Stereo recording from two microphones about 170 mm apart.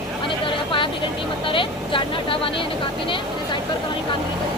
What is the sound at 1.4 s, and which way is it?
Speech, 30° left (ahead or behind).